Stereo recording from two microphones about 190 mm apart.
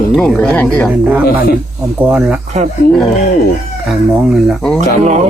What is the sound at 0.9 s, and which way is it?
Speech, 5° right (ahead or behind).